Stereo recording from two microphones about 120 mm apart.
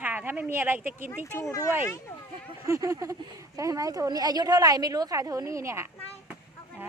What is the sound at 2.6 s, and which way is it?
A woman's voice, 30° right (ahead or behind).